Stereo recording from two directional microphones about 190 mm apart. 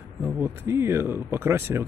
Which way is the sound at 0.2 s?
10° right (ahead or behind).